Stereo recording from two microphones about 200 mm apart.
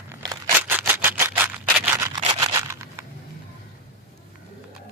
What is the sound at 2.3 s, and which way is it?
Tearing, 15° right (ahead or behind).